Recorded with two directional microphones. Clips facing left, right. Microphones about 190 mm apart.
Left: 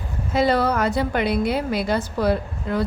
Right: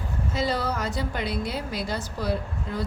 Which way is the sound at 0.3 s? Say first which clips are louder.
Left 8 dB; 60° left (ahead or behind).